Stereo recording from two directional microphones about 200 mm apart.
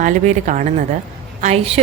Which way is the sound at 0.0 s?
40° right (ahead or behind).